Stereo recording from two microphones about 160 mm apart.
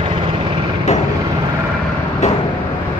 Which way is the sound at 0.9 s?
45° left (ahead or behind).